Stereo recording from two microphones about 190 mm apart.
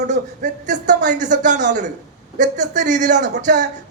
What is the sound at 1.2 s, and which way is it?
A man's voice, 40° right (ahead or behind).